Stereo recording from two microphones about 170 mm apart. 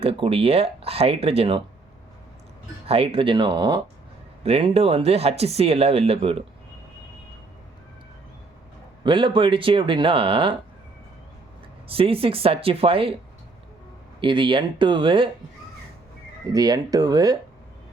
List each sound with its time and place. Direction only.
0.0 s speech: 35° right (ahead or behind)
2.8 s speech: 35° right (ahead or behind)
9.0 s speech: 30° right (ahead or behind)
11.9 s speech: 35° right (ahead or behind)
14.2 s speech: 30° right (ahead or behind)
16.5 s speech: 20° right (ahead or behind)